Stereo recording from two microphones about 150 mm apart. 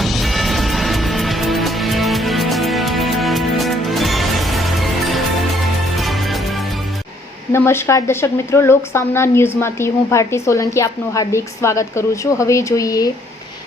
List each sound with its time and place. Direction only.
0.0 s music: centre (ahead or behind)
7.5 s a woman's voice: 15° left (ahead or behind)